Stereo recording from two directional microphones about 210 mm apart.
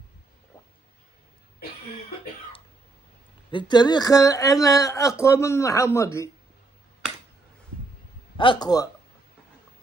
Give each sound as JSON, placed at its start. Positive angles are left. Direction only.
{"t": 3.5, "sound": "a woman's voice", "side_deg": 20}
{"t": 8.4, "sound": "speech", "side_deg": 20}